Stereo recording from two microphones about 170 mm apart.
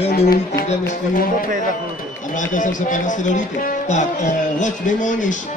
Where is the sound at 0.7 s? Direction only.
55° left (ahead or behind).